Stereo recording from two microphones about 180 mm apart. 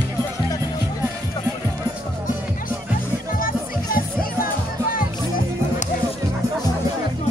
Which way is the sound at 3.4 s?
50° left (ahead or behind).